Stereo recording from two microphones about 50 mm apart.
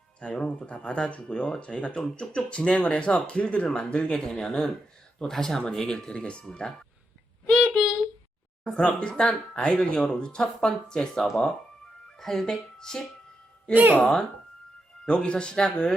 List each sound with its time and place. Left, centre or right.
0.2 s speech: left
7.4 s child singing: centre
9.0 s speech: left
13.7 s speech: right
14.0 s speech: centre